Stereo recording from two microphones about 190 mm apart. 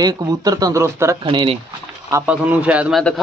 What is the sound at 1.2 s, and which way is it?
Speech, 25° right (ahead or behind).